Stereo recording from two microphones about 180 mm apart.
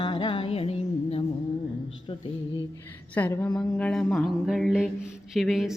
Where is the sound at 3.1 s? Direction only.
10° left (ahead or behind).